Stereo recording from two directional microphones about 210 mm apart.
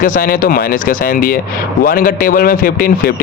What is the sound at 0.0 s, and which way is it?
A man's voice, 40° left (ahead or behind).